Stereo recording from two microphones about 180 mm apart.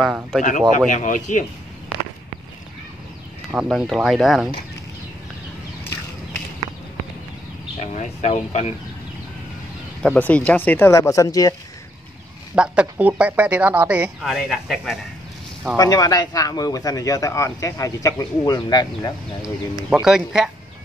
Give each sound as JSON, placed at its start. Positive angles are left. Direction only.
{"t": 0.0, "sound": "speech", "side_deg": -5}
{"t": 0.7, "sound": "speech", "side_deg": 45}
{"t": 3.5, "sound": "speech", "side_deg": -5}
{"t": 7.8, "sound": "speech", "side_deg": 40}
{"t": 10.0, "sound": "speech", "side_deg": 5}
{"t": 12.5, "sound": "a woman's voice", "side_deg": -5}
{"t": 15.7, "sound": "speech", "side_deg": 20}
{"t": 19.4, "sound": "speech", "side_deg": -5}